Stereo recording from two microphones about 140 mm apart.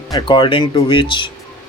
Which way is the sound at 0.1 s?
35° left (ahead or behind).